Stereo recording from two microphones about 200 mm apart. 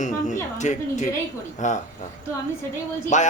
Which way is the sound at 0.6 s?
35° left (ahead or behind).